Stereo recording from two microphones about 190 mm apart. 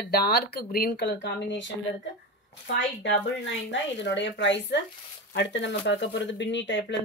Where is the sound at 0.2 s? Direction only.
55° left (ahead or behind).